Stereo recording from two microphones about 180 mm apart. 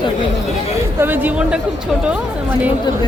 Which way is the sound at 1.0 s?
10° right (ahead or behind).